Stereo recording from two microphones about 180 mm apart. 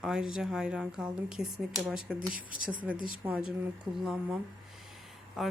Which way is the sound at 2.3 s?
50° right (ahead or behind).